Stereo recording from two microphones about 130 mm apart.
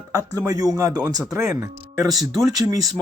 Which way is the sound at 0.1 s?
25° right (ahead or behind).